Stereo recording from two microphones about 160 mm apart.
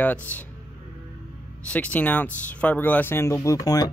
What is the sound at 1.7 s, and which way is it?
Speech, 10° left (ahead or behind).